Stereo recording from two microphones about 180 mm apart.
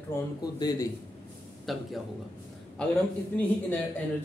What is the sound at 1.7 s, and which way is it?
Speech, centre (ahead or behind).